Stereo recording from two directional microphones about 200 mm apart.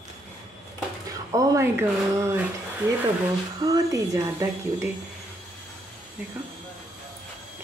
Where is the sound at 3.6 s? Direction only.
15° right (ahead or behind).